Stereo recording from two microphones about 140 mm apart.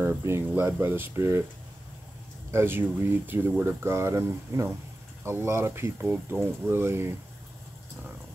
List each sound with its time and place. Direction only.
0.0 s speech: 15° right (ahead or behind)
2.5 s speech: 15° right (ahead or behind)